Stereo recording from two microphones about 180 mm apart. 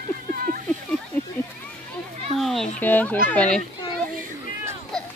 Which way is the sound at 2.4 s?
Centre (ahead or behind).